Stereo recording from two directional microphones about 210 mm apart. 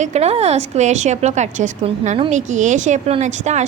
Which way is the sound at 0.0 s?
30° right (ahead or behind).